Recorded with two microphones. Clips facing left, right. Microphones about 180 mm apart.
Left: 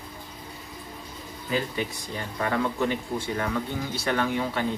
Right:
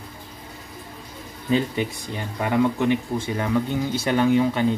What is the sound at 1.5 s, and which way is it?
Speech, 20° right (ahead or behind).